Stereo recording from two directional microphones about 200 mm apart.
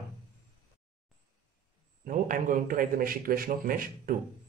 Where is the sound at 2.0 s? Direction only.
40° right (ahead or behind).